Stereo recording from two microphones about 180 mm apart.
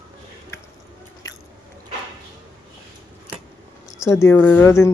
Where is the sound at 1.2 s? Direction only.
15° left (ahead or behind).